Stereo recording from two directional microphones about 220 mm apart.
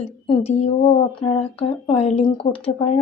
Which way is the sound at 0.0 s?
25° left (ahead or behind).